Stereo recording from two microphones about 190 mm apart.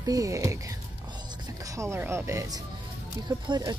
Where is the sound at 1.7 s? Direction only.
15° right (ahead or behind).